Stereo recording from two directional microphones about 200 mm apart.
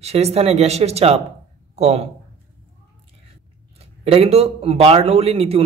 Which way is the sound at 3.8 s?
30° right (ahead or behind).